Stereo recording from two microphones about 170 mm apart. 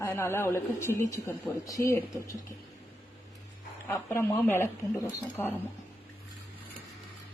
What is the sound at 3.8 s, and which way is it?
Speech, 10° left (ahead or behind).